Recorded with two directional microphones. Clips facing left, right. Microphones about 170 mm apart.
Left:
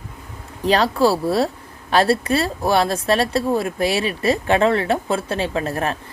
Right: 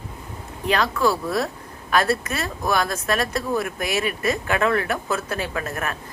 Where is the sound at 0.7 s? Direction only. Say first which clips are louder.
Left 4 dB; 35° left (ahead or behind).